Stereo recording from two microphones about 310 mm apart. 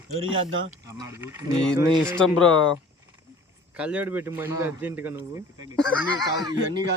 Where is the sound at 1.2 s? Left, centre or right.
Centre.